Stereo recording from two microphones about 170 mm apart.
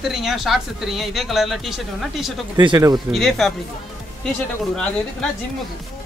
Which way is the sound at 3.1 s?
Centre (ahead or behind).